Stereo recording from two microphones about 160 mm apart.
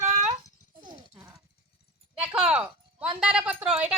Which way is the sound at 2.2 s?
5° right (ahead or behind).